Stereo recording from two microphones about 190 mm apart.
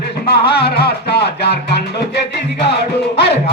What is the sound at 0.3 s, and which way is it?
Music, 55° left (ahead or behind).